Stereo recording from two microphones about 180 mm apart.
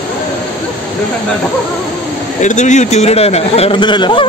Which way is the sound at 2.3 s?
40° left (ahead or behind).